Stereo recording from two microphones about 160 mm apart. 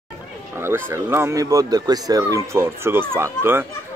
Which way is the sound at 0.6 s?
15° right (ahead or behind).